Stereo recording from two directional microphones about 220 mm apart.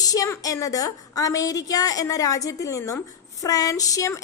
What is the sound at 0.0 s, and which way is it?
A woman's voice, 15° left (ahead or behind).